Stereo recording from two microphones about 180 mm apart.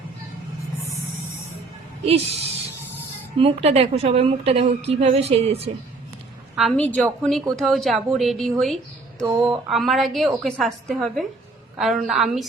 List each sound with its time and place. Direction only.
2.0 s a woman's voice: 35° right (ahead or behind)
6.6 s a woman's voice: 5° left (ahead or behind)